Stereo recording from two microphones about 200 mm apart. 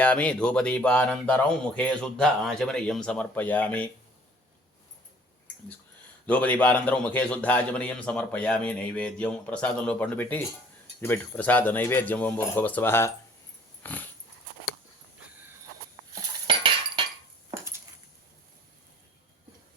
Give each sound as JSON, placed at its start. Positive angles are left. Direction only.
{"t": 0.0, "sound": "speech", "side_deg": 5}
{"t": 6.2, "sound": "a man's voice", "side_deg": 5}
{"t": 13.8, "sound": "dog", "side_deg": 10}
{"t": 16.5, "sound": "chink", "side_deg": -25}